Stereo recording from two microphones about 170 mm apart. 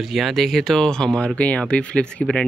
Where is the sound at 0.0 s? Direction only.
Centre (ahead or behind).